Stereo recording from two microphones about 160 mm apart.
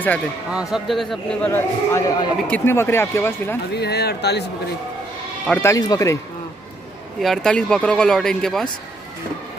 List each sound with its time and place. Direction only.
0.5 s speech: 5° right (ahead or behind)
1.5 s a man's voice: 20° left (ahead or behind)
3.7 s speech: 90° left
5.5 s a man's voice: 15° left (ahead or behind)
7.2 s speech: centre (ahead or behind)